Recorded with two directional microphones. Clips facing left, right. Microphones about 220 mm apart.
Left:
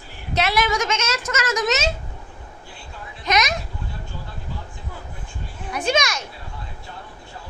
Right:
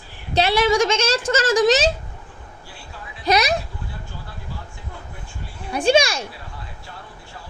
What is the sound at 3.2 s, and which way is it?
Speech, 35° right (ahead or behind).